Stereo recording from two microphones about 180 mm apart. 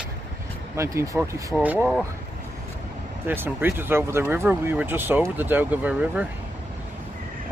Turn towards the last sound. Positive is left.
turn(degrees=-10)  # may be behind; listen again after turning